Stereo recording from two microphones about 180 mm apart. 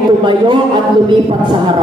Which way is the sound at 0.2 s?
25° right (ahead or behind).